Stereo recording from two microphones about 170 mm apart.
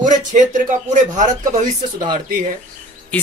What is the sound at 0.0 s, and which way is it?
Speech, 45° right (ahead or behind).